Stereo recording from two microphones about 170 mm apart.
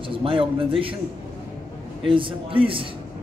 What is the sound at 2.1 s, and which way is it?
Speech, 30° right (ahead or behind).